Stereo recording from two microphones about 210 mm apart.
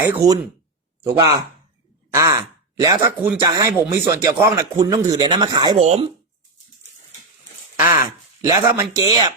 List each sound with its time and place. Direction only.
0.0 s speech: 15° right (ahead or behind)
2.1 s sigh: 15° right (ahead or behind)
2.8 s speech: 15° right (ahead or behind)
5.7 s speech: 30° right (ahead or behind)
8.4 s speech: 15° right (ahead or behind)